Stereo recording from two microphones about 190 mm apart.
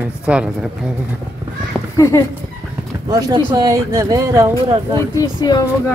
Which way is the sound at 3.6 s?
15° right (ahead or behind).